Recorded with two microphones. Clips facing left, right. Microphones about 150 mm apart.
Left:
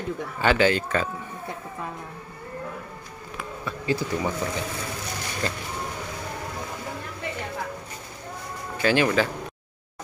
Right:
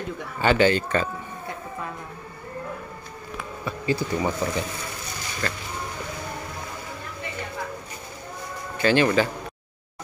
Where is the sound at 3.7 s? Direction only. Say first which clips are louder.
Right 1 dB; centre (ahead or behind).